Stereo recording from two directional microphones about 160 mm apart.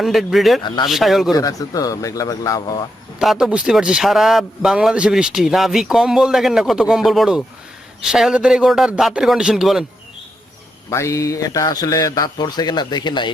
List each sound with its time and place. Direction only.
0.0 s a man's voice: centre (ahead or behind)
1.3 s a man's voice: 20° left (ahead or behind)
3.2 s a man's voice: 5° right (ahead or behind)
10.8 s a man's voice: 20° left (ahead or behind)